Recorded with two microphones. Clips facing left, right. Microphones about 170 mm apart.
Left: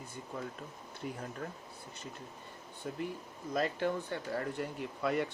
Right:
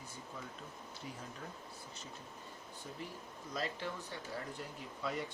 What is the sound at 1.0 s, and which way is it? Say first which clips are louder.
Speech: left 8 dB; 60° left (ahead or behind).